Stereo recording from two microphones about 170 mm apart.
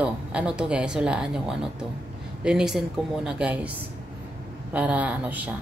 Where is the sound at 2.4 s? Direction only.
5° right (ahead or behind).